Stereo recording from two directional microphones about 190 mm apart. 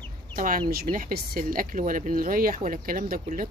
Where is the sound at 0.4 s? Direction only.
50° right (ahead or behind).